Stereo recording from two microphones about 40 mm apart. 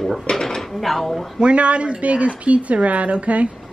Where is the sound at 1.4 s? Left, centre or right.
Right.